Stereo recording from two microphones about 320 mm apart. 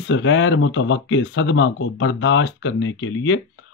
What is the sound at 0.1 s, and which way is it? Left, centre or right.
Speech, left.